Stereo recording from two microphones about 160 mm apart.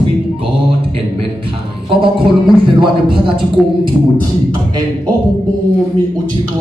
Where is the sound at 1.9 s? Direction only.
30° right (ahead or behind).